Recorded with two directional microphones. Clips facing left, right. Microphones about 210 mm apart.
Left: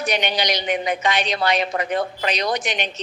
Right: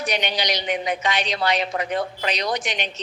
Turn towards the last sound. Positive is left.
turn(degrees=50)  # may be behind; listen again after turning